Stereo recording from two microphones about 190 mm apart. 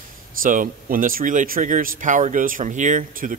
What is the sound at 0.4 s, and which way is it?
Speech, 45° right (ahead or behind).